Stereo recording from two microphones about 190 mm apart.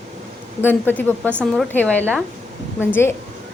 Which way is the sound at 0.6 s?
10° left (ahead or behind).